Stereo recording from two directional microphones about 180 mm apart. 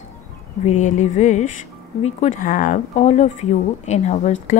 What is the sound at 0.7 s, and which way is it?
Speech, 40° left (ahead or behind).